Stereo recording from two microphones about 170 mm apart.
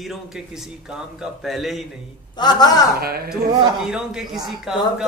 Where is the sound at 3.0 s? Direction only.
65° right (ahead or behind).